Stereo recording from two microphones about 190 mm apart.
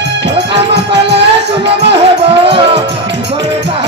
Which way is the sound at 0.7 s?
65° right (ahead or behind).